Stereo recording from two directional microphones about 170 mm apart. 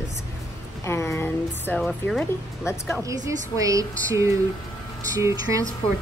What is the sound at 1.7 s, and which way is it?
Speech, 5° left (ahead or behind).